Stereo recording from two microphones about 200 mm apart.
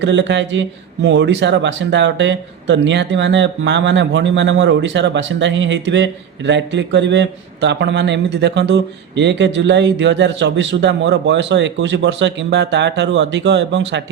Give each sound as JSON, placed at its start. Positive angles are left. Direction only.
{"t": 0.0, "sound": "speech", "side_deg": -60}